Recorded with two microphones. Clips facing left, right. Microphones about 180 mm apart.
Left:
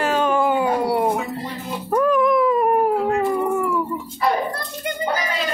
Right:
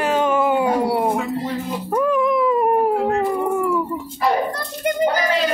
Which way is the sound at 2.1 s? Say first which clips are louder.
Left 1 dB; 25° right (ahead or behind).